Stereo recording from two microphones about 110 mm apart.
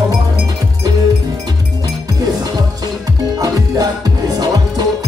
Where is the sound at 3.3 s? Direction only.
35° right (ahead or behind).